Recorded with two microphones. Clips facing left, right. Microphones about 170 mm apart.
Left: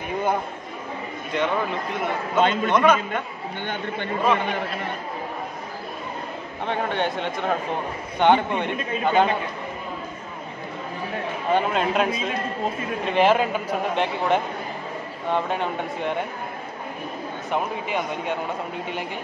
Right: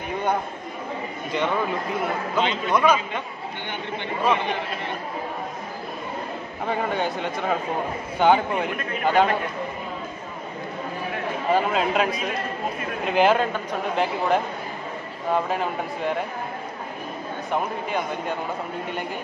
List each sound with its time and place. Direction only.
1.3 s a man's voice: centre (ahead or behind)
2.4 s a man's voice: 50° left (ahead or behind)
2.7 s a man's voice: 5° right (ahead or behind)
3.6 s a man's voice: 50° left (ahead or behind)
6.6 s a man's voice: 5° right (ahead or behind)
11.5 s a man's voice: centre (ahead or behind)
13.1 s a man's voice: centre (ahead or behind)
17.5 s a man's voice: centre (ahead or behind)